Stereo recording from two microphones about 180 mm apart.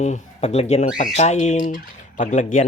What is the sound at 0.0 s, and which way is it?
Speech, 40° left (ahead or behind).